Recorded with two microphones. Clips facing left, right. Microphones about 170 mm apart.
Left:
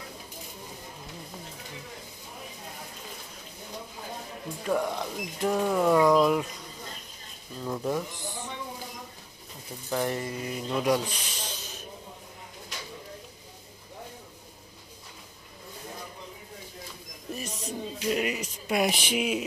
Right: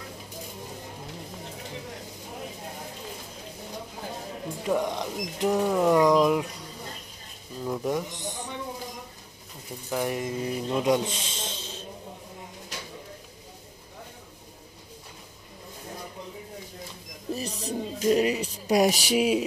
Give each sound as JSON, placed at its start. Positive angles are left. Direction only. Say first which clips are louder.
{"t": 4.6, "sound": "speech", "louder": "right 1 dB", "side_deg": -15}
{"t": 7.6, "sound": "speech", "louder": "right 2 dB", "side_deg": -10}
{"t": 8.2, "sound": "a sound", "louder": "right 2 dB", "side_deg": -20}
{"t": 9.8, "sound": "speech", "louder": "right 1 dB", "side_deg": -10}
{"t": 10.3, "sound": "speech", "louder": "right 3 dB", "side_deg": -25}
{"t": 17.4, "sound": "music", "louder": "right 3 dB", "side_deg": -35}